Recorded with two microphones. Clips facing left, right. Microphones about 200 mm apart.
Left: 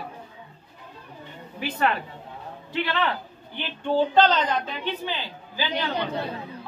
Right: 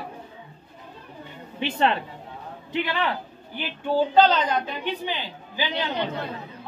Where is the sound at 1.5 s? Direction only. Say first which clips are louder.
Right 2 dB; 25° right (ahead or behind).